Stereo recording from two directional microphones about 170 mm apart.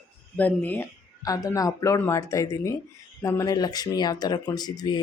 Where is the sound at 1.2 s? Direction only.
20° left (ahead or behind).